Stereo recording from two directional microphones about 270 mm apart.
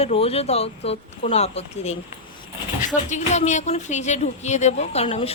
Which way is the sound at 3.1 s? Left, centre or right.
Left.